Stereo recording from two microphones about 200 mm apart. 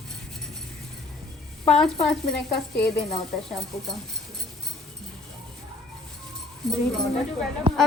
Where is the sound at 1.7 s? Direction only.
Centre (ahead or behind).